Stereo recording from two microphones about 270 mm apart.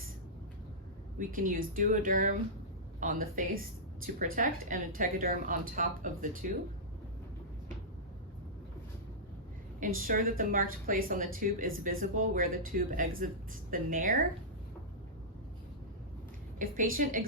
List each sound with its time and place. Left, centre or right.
1.2 s speech: right
9.8 s a woman's voice: right
16.6 s a woman's voice: right